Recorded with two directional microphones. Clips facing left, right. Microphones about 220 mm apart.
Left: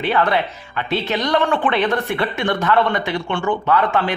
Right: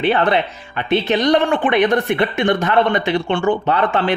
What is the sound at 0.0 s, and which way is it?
Speech, 25° right (ahead or behind).